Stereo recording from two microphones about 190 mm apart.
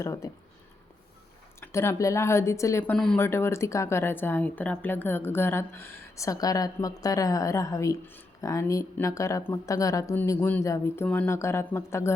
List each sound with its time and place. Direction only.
0.0 s speech: 15° left (ahead or behind)
1.6 s speech: 15° left (ahead or behind)